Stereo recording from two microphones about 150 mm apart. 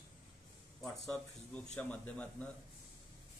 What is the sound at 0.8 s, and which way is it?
Speech, 5° left (ahead or behind).